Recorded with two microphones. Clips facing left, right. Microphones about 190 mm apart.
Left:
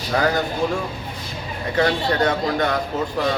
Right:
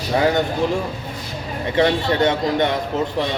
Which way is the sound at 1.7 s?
25° right (ahead or behind).